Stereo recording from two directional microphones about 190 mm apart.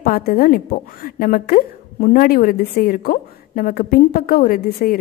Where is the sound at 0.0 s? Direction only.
50° left (ahead or behind).